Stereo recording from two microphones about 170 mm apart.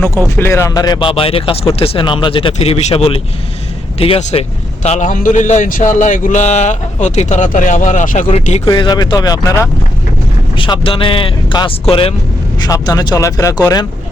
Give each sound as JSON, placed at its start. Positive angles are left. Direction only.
{"t": 0.3, "sound": "a man's voice", "side_deg": 15}
{"t": 8.6, "sound": "speech", "side_deg": 25}